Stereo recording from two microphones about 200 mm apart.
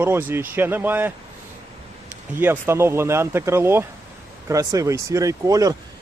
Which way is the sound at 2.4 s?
10° right (ahead or behind).